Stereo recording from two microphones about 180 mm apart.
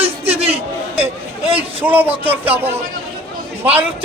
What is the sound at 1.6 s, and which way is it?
A man's voice, 10° right (ahead or behind).